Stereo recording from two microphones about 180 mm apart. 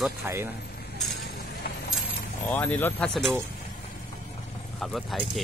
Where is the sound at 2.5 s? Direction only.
10° left (ahead or behind).